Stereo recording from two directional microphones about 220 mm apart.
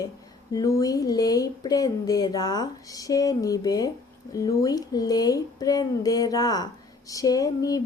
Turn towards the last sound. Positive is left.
turn(degrees=15)  # may be behind; listen again after turning